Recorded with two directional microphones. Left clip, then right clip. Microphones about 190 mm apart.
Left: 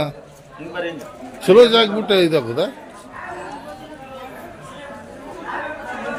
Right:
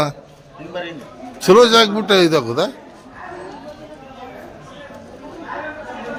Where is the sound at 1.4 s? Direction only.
30° right (ahead or behind).